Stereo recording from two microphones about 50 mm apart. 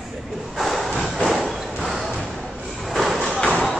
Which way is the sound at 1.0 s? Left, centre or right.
Centre.